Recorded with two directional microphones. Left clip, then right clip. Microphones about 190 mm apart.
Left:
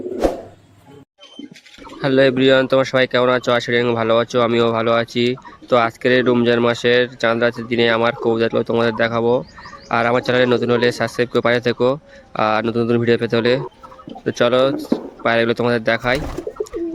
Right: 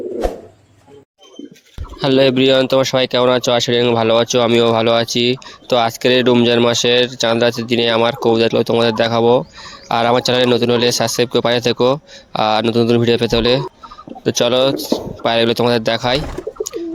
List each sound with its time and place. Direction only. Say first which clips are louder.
2.0 s speech: right 2 dB; 15° right (ahead or behind)